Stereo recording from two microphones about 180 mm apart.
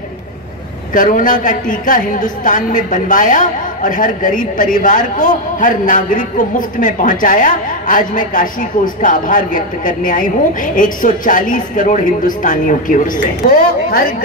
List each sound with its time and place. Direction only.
0.9 s a man's voice: 45° left (ahead or behind)